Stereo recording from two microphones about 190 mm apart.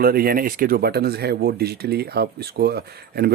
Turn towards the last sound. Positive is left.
turn(degrees=-55)  # may be behind; listen again after turning